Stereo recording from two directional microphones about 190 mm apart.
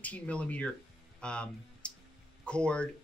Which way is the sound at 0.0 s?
5° left (ahead or behind).